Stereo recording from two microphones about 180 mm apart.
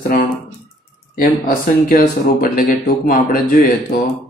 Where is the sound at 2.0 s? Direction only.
50° left (ahead or behind).